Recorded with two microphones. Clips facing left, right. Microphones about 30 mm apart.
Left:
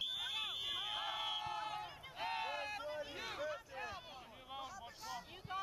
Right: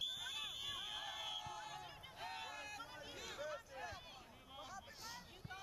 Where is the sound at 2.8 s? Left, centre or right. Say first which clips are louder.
Left 8 dB; centre.